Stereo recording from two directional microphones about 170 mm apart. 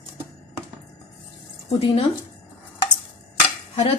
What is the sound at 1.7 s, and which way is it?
Speech, 35° left (ahead or behind).